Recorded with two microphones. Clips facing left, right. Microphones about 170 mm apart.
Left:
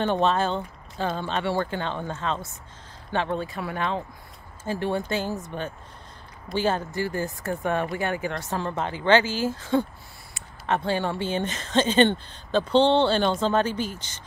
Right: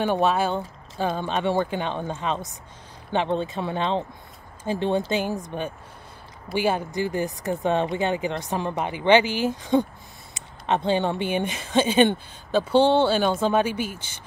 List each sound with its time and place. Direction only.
0.0 s speech: 10° right (ahead or behind)